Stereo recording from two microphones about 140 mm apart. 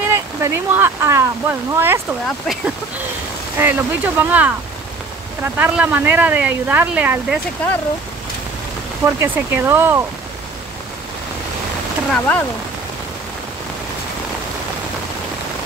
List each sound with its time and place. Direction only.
0.1 s speech: 15° right (ahead or behind)
2.2 s speech: centre (ahead or behind)
3.5 s speech: 15° right (ahead or behind)
9.0 s speech: 20° right (ahead or behind)
12.1 s speech: 10° left (ahead or behind)